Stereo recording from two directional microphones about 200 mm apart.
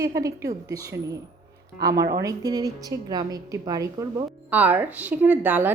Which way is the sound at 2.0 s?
55° right (ahead or behind).